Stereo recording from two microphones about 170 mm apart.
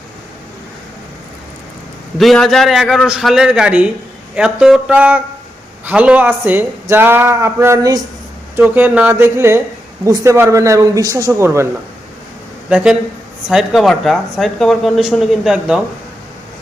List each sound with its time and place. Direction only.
2.1 s speech: centre (ahead or behind); by 8.0 s 20° right (ahead or behind)
8.5 s speech: 10° right (ahead or behind)
12.6 s speech: 5° right (ahead or behind)